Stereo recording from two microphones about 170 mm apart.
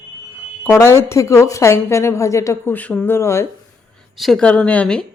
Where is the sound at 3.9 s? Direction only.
Centre (ahead or behind).